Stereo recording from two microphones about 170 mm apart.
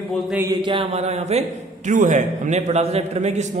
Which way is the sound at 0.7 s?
35° right (ahead or behind).